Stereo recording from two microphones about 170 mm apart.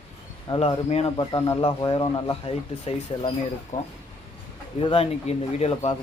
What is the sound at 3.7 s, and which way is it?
Speech, 50° left (ahead or behind).